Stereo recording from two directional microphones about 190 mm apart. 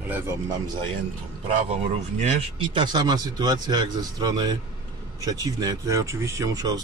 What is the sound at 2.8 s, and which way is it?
Speech, 20° right (ahead or behind).